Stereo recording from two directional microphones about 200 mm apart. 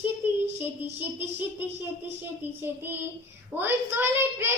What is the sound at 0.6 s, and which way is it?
Child singing, 10° right (ahead or behind).